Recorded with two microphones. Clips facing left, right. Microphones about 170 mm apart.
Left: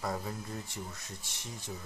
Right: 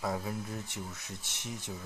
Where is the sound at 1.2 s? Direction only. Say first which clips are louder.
Right 4 dB; 20° right (ahead or behind).